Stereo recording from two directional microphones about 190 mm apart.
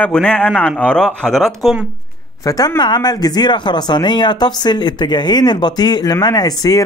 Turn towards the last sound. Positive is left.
turn(degrees=20)  # may be behind; listen again after turning